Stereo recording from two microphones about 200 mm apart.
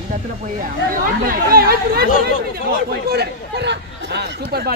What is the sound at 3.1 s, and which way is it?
Chatter, 55° right (ahead or behind).